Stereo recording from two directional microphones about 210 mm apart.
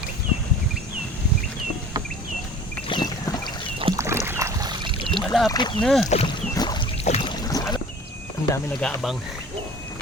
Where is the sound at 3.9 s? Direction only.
15° right (ahead or behind).